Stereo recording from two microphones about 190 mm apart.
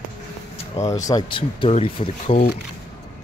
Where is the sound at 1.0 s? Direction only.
25° left (ahead or behind).